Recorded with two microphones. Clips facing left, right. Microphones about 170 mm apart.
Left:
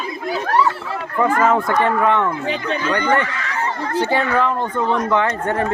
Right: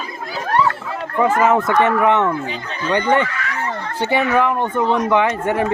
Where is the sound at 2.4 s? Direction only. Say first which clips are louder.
Left 5 dB; 70° left (ahead or behind).